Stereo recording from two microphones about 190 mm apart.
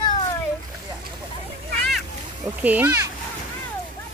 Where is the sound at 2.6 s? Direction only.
10° right (ahead or behind).